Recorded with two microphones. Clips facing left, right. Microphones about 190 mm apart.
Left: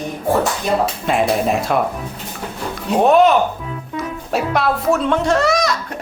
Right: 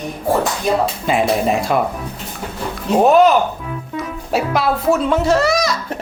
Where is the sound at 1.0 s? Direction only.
Centre (ahead or behind).